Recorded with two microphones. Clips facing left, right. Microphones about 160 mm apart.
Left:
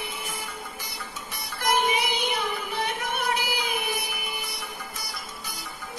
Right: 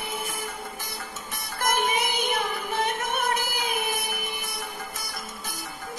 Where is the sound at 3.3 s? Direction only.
45° right (ahead or behind).